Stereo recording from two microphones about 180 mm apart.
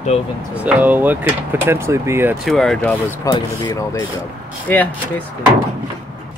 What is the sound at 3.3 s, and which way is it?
Speech, 20° left (ahead or behind).